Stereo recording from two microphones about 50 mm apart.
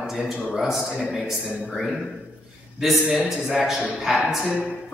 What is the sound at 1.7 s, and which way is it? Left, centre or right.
Speech, centre.